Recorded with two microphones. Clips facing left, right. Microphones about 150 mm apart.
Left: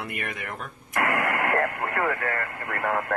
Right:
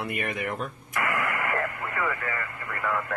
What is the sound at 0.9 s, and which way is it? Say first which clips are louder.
Radio: left 4 dB; 55° left (ahead or behind).